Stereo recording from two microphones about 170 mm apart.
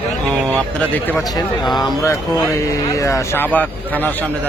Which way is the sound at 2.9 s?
15° left (ahead or behind).